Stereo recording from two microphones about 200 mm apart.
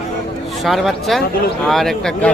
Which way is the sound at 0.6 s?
Centre (ahead or behind).